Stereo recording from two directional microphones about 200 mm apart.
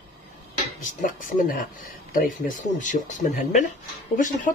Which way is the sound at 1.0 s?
40° left (ahead or behind).